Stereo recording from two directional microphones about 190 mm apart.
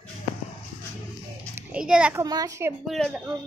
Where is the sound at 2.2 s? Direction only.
20° right (ahead or behind).